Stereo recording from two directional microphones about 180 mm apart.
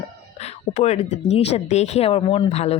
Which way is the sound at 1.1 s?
35° left (ahead or behind).